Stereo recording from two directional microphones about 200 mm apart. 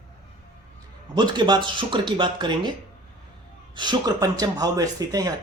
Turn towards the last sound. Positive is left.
turn(degrees=-20)  # may be behind; listen again after turning